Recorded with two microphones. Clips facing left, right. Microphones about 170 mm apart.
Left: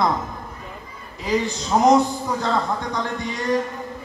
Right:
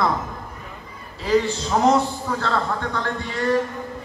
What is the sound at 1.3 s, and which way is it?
A man's voice, 15° left (ahead or behind).